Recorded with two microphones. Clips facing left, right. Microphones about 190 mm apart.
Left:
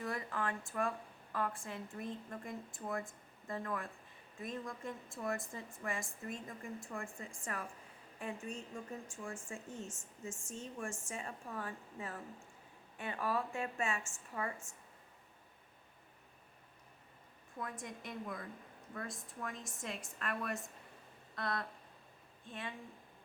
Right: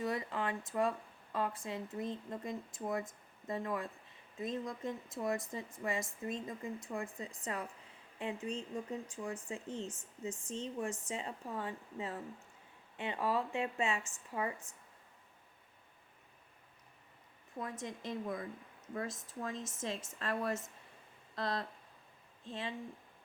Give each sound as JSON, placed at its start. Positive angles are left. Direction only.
{"t": 0.0, "sound": "speech", "side_deg": -20}
{"t": 17.6, "sound": "speech", "side_deg": -20}